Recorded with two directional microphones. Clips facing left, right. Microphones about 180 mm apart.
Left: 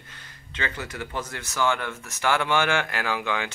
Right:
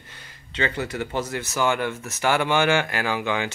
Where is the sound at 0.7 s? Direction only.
60° right (ahead or behind).